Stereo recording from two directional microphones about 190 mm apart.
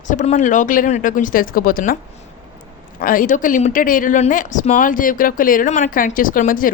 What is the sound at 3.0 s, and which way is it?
Speech, 45° left (ahead or behind).